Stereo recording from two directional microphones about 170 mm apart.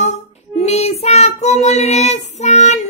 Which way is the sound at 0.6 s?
40° left (ahead or behind).